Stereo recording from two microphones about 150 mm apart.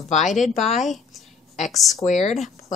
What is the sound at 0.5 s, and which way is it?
Speech, 50° left (ahead or behind).